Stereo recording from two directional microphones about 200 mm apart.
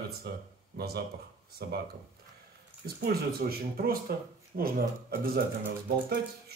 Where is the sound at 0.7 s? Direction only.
50° right (ahead or behind).